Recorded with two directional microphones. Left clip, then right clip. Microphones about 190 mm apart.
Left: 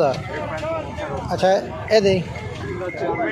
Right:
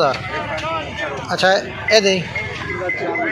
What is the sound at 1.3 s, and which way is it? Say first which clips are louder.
Speech: right 2 dB; 25° left (ahead or behind).